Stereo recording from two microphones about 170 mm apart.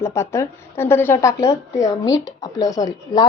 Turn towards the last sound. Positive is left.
turn(degrees=20)  # may be behind; listen again after turning